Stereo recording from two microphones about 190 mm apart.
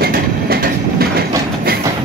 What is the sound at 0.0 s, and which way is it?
Train, 55° right (ahead or behind).